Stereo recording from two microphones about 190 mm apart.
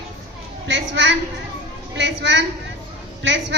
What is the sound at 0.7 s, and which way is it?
A woman's voice, 70° right (ahead or behind).